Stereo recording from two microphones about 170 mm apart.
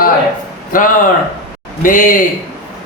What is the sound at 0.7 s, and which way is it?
Speech, 55° left (ahead or behind).